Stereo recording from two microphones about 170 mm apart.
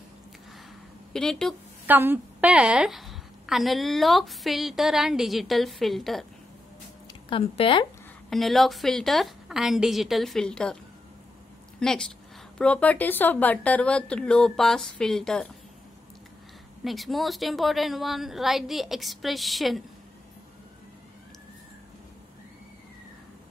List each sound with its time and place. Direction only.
1.1 s a woman's voice: 5° left (ahead or behind)
1.9 s a woman's voice: 10° right (ahead or behind)
7.2 s speech: 30° left (ahead or behind)
8.3 s a woman's voice: centre (ahead or behind)
11.8 s a woman's voice: 5° left (ahead or behind)
16.8 s a woman's voice: centre (ahead or behind)